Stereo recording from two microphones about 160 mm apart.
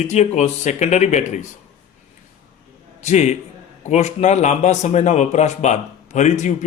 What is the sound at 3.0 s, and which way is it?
A man's voice, 45° left (ahead or behind).